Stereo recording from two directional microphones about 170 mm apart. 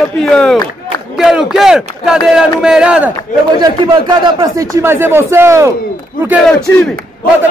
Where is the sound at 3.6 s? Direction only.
25° right (ahead or behind).